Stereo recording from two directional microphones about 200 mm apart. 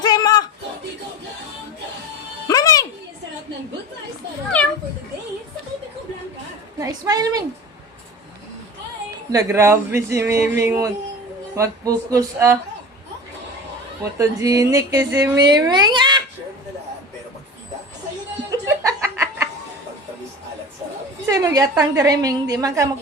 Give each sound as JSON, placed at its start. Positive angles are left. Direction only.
{"t": 0.0, "sound": "a sound", "side_deg": 20}
{"t": 2.5, "sound": "music", "side_deg": 15}
{"t": 6.7, "sound": "a woman's voice", "side_deg": -15}
{"t": 9.3, "sound": "a woman's voice", "side_deg": -15}
{"t": 14.2, "sound": "speech", "side_deg": -15}
{"t": 18.5, "sound": "music", "side_deg": -15}
{"t": 21.2, "sound": "a woman's voice", "side_deg": -15}